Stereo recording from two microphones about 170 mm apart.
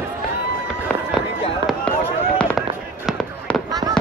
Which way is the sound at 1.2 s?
Centre (ahead or behind).